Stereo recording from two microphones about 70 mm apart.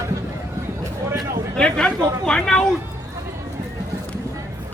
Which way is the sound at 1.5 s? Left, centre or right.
Centre.